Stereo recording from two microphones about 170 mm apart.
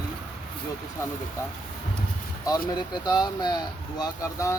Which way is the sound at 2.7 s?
25° left (ahead or behind).